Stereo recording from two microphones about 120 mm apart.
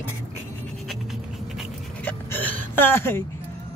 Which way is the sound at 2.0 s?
15° left (ahead or behind).